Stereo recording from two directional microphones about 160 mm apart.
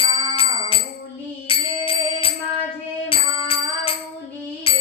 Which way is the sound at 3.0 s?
35° left (ahead or behind).